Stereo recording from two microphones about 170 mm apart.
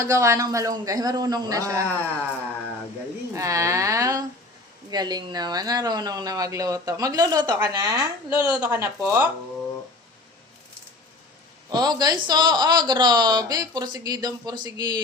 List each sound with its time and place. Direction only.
0.0 s speech: 15° right (ahead or behind)
3.3 s speech: 20° right (ahead or behind)
11.7 s speech: 25° right (ahead or behind)